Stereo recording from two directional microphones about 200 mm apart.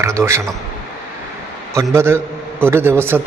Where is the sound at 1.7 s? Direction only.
15° right (ahead or behind).